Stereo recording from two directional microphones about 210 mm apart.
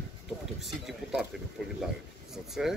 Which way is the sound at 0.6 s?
Centre (ahead or behind).